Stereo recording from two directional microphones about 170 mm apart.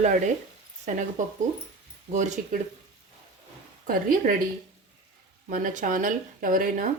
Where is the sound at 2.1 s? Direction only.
45° right (ahead or behind).